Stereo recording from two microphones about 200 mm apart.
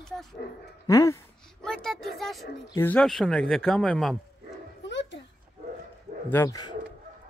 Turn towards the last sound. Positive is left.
turn(degrees=20)  # may be behind; listen again after turning